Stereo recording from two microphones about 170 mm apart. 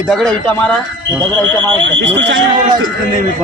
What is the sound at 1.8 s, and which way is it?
Speech, 90° right.